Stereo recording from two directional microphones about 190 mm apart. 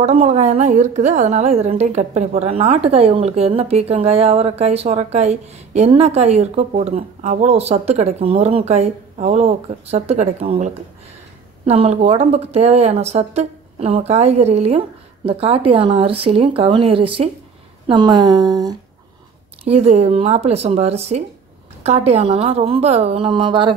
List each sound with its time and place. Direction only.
0.0 s a woman's voice: 35° right (ahead or behind); by 18.8 s 20° right (ahead or behind)
19.6 s a woman's voice: 35° right (ahead or behind)